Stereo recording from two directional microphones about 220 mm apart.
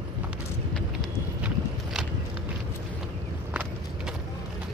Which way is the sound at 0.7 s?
Centre (ahead or behind).